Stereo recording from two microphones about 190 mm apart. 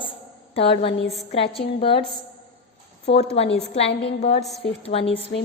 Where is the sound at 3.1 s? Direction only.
30° left (ahead or behind).